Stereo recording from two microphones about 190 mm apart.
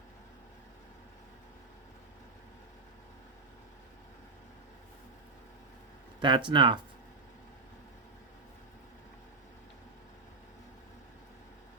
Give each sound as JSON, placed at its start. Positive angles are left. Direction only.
{"t": 6.1, "sound": "speech", "side_deg": -25}